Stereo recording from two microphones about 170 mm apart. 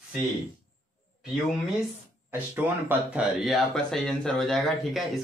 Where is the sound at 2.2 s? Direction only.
10° right (ahead or behind).